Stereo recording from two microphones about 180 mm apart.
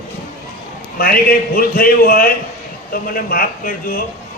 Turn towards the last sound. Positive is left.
turn(degrees=55)  # may be behind; listen again after turning